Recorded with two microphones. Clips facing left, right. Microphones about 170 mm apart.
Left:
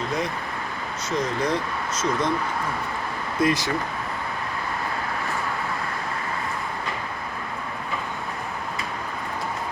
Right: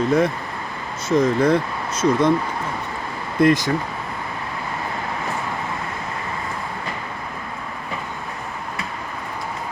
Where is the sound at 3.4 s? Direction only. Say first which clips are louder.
Right 7 dB; 50° right (ahead or behind).